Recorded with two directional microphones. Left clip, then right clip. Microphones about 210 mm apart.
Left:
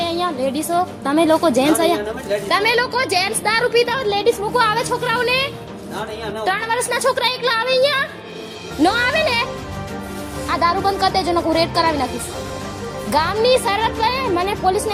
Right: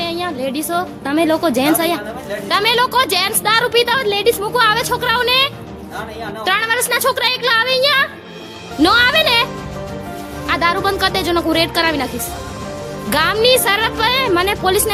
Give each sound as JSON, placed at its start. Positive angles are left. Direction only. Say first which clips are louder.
{"t": 0.0, "sound": "a woman's voice", "louder": "left 1 dB", "side_deg": -10}
{"t": 10.5, "sound": "a woman's voice", "louder": "right 2 dB", "side_deg": -25}
{"t": 13.1, "sound": "a woman's voice", "louder": "right 3 dB", "side_deg": -25}